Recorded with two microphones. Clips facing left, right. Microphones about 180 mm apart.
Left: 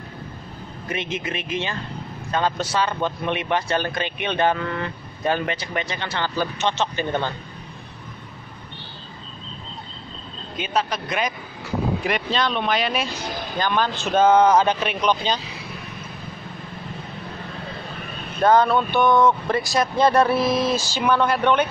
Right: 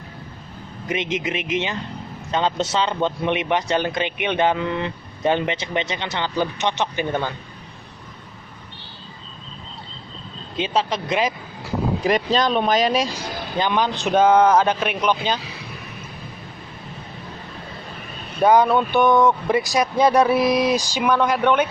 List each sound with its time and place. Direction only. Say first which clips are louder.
0.8 s speech: right 4 dB; 20° right (ahead or behind)
10.5 s speech: right 2 dB; 25° right (ahead or behind)
12.0 s speech: right 4 dB; 40° right (ahead or behind)
13.6 s speech: right 2 dB; 15° right (ahead or behind)
18.4 s speech: right 1 dB; 15° right (ahead or behind)